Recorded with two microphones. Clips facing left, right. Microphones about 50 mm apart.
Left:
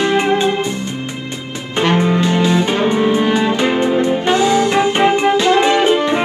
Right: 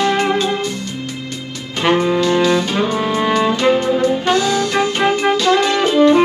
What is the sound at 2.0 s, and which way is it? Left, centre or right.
Music, left.